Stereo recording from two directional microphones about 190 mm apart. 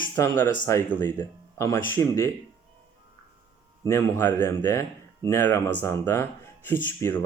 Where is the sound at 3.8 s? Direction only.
15° left (ahead or behind).